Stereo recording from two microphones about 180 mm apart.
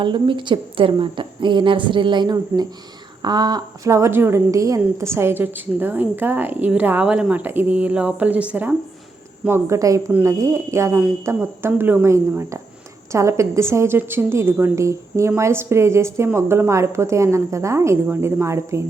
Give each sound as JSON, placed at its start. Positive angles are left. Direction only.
{"t": 0.0, "sound": "a woman's voice", "side_deg": -25}